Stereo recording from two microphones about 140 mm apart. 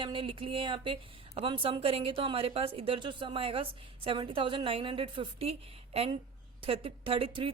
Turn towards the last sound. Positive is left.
turn(degrees=-40)  # may be behind; listen again after turning